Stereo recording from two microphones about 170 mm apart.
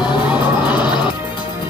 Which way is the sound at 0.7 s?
25° left (ahead or behind).